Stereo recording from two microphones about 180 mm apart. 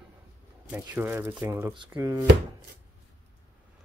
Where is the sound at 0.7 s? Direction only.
10° right (ahead or behind).